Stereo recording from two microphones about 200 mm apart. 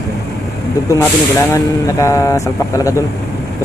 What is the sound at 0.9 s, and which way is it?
Speech, 15° left (ahead or behind).